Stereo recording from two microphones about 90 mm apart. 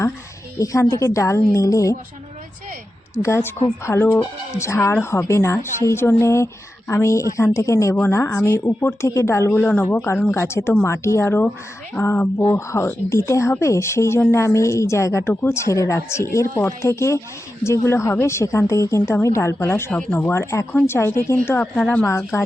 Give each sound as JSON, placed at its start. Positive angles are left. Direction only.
{"t": 0.6, "sound": "a woman's voice", "side_deg": 35}
{"t": 3.2, "sound": "a woman's voice", "side_deg": 30}
{"t": 19.9, "sound": "speech", "side_deg": 15}
{"t": 21.8, "sound": "speech", "side_deg": 15}
{"t": 22.3, "sound": "speech", "side_deg": 30}